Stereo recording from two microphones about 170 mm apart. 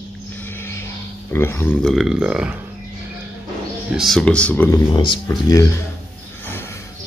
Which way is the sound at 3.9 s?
Centre (ahead or behind).